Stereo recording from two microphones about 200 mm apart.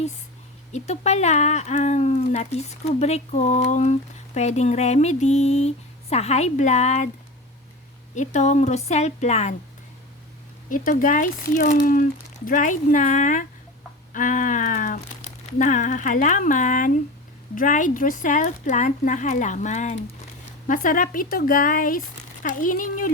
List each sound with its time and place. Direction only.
0.7 s speech: 35° left (ahead or behind)
8.1 s speech: 35° left (ahead or behind)
10.7 s speech: 40° left (ahead or behind)